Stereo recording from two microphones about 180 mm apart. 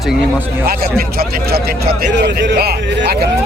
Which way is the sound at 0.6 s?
55° right (ahead or behind).